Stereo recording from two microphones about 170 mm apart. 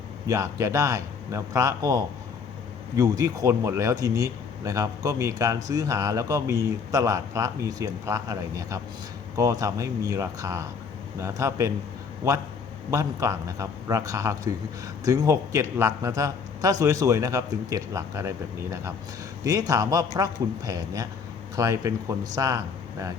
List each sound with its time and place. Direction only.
0.3 s a man's voice: 15° right (ahead or behind)